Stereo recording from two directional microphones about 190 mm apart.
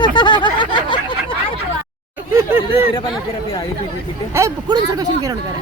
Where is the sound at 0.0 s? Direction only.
25° left (ahead or behind).